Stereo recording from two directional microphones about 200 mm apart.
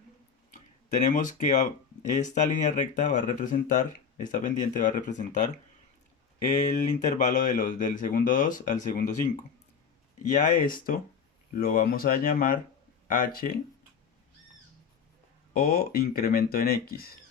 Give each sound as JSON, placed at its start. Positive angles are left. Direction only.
{"t": 0.9, "sound": "speech", "side_deg": 40}
{"t": 7.2, "sound": "speech", "side_deg": 35}
{"t": 15.5, "sound": "speech", "side_deg": 50}